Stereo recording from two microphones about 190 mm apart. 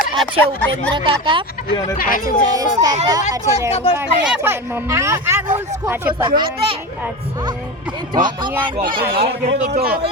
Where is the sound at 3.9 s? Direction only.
10° right (ahead or behind).